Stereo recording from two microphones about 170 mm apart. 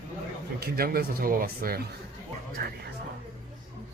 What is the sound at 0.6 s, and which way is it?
Speech, 60° right (ahead or behind).